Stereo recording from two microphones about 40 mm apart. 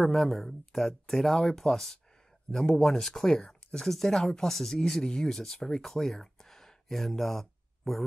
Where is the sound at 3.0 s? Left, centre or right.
Centre.